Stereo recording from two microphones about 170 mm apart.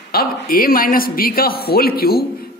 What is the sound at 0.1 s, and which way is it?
A man's voice, 60° left (ahead or behind).